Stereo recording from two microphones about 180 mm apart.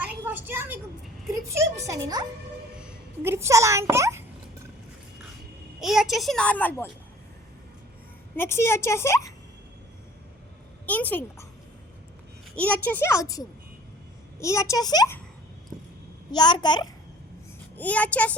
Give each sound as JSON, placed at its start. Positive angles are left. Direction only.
{"t": 0.0, "sound": "a sound", "side_deg": -10}
{"t": 2.7, "sound": "speech", "side_deg": -10}
{"t": 5.8, "sound": "a woman's voice", "side_deg": 0}
{"t": 8.4, "sound": "speech", "side_deg": 15}
{"t": 10.8, "sound": "speech", "side_deg": 10}
{"t": 12.5, "sound": "speech", "side_deg": 5}
{"t": 16.3, "sound": "a child's voice", "side_deg": 25}
{"t": 17.7, "sound": "speech", "side_deg": 10}